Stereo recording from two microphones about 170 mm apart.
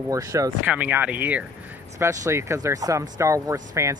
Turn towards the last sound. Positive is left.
turn(degrees=-20)  # may be behind; listen again after turning